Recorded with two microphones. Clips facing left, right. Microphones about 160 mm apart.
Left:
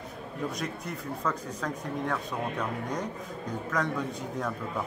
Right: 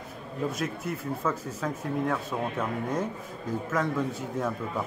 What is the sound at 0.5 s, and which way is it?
Speech, 5° right (ahead or behind).